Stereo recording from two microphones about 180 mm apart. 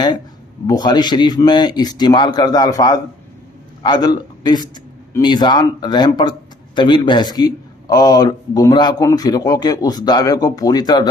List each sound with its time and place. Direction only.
0.7 s a man's voice: 25° left (ahead or behind)